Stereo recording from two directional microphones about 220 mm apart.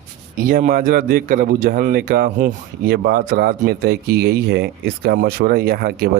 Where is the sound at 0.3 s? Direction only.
40° right (ahead or behind).